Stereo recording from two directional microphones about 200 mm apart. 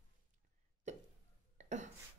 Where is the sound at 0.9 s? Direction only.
35° right (ahead or behind).